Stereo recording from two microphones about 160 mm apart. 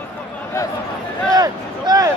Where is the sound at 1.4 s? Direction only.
25° right (ahead or behind).